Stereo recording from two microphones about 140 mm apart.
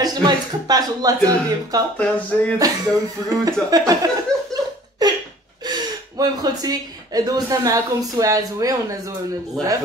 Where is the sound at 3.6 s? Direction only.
25° right (ahead or behind).